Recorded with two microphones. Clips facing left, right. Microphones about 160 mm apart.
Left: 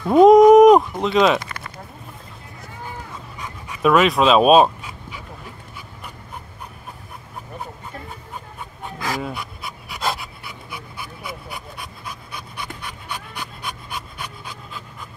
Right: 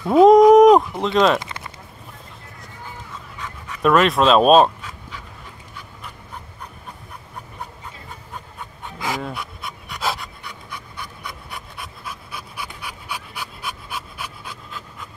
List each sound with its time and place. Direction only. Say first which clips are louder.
0.0 s speech: left 1 dB; centre (ahead or behind)
1.4 s a sound: even; 20° right (ahead or behind)
3.3 s dog: right 2 dB; 10° left (ahead or behind)
9.2 s pant: left 1 dB; centre (ahead or behind)